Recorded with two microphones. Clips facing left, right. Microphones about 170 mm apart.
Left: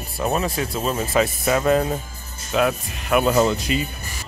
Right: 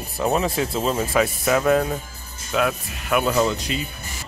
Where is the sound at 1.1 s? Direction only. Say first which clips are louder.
Left 1 dB; 15° left (ahead or behind).